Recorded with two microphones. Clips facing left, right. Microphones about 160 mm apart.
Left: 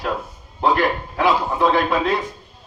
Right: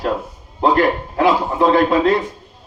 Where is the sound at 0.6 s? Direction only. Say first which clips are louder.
Right 4 dB; 45° right (ahead or behind).